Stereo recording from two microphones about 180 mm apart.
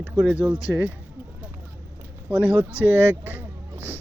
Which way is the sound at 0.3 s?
5° right (ahead or behind).